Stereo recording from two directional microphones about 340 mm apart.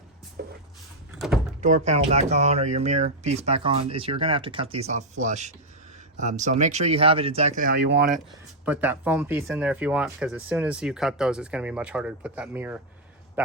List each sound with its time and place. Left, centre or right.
0.4 s speech: right
1.6 s speech: centre
8.6 s speech: centre